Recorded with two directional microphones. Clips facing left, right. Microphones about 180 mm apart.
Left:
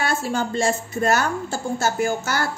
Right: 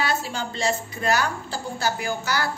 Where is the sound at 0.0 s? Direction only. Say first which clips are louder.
Left 3 dB; 50° left (ahead or behind).